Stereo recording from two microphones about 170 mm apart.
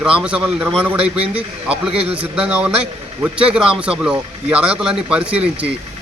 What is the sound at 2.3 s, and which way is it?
A man's voice, 5° right (ahead or behind).